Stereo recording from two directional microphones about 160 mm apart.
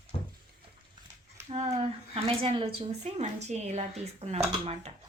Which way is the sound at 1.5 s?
40° right (ahead or behind).